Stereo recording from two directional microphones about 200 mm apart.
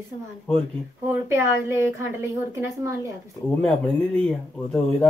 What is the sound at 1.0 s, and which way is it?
A woman's voice, 15° right (ahead or behind).